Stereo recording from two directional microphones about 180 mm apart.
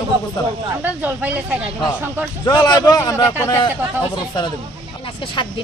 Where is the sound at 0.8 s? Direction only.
10° right (ahead or behind).